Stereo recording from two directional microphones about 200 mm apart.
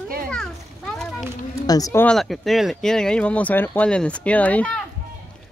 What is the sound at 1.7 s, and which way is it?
Speech, 15° left (ahead or behind).